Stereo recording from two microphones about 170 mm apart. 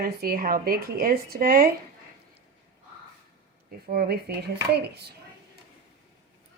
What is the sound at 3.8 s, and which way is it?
Speech, 65° right (ahead or behind).